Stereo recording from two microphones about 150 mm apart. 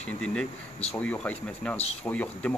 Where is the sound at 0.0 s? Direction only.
5° left (ahead or behind).